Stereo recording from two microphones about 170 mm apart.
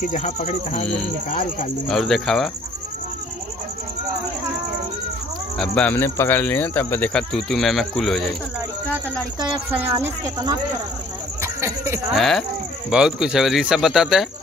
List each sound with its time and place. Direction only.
0.1 s speech: 40° left (ahead or behind)
1.3 s speech: 50° left (ahead or behind)
1.9 s speech: centre (ahead or behind)
5.6 s speech: 10° left (ahead or behind)
9.7 s speech: 10° right (ahead or behind)
12.1 s speech: centre (ahead or behind)